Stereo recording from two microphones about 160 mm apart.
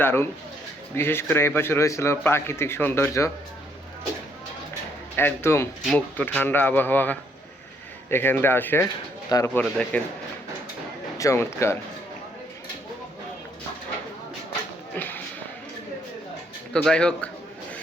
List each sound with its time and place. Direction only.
0.0 s a man's voice: 15° left (ahead or behind)
5.1 s a man's voice: 15° left (ahead or behind)
11.2 s a man's voice: 20° left (ahead or behind)
14.9 s a sound: 10° left (ahead or behind)
16.7 s a man's voice: 5° left (ahead or behind)